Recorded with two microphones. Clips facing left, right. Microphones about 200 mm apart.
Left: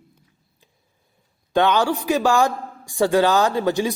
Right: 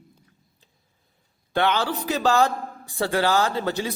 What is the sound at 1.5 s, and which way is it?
Speech, 15° left (ahead or behind).